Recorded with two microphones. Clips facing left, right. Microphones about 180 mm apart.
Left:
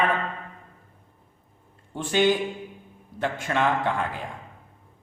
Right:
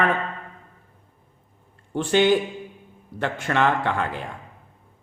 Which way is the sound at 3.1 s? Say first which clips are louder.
Right 2 dB; 75° right (ahead or behind).